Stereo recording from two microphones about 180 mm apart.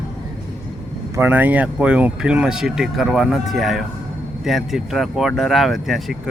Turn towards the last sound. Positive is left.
turn(degrees=0)  # may be behind; listen again after turning